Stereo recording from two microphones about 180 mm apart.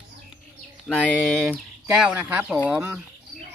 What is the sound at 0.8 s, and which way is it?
Speech, 5° left (ahead or behind).